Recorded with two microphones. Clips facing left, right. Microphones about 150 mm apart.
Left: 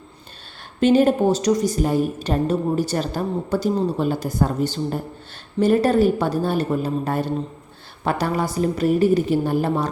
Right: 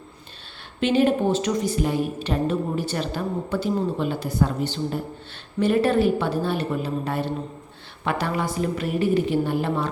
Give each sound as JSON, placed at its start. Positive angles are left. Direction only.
{"t": 0.8, "sound": "a woman's voice", "side_deg": 40}